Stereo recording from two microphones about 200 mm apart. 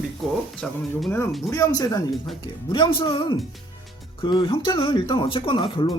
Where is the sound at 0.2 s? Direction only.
Centre (ahead or behind).